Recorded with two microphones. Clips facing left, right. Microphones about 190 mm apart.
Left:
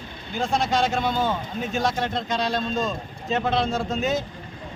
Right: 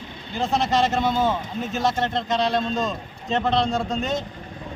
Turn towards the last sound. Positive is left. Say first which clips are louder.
# even
turn(degrees=0)  # may be behind; listen again after turning